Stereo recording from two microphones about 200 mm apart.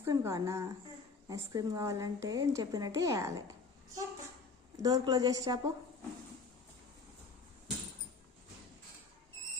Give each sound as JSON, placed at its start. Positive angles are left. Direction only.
{"t": 0.0, "sound": "a woman's voice", "side_deg": -15}
{"t": 4.8, "sound": "speech", "side_deg": -20}